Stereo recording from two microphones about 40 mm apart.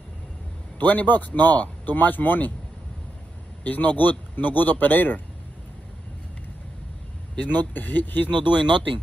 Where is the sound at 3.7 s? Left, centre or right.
Left.